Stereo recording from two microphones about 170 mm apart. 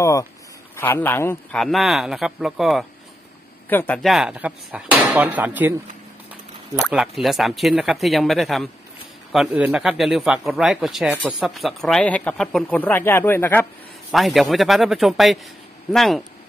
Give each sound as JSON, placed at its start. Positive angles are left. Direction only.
{"t": 0.0, "sound": "speech", "side_deg": 15}
{"t": 1.6, "sound": "speech", "side_deg": 0}
{"t": 3.6, "sound": "speech", "side_deg": 10}
{"t": 4.1, "sound": "speech", "side_deg": -5}
{"t": 6.9, "sound": "speech", "side_deg": 0}
{"t": 14.1, "sound": "speech", "side_deg": 0}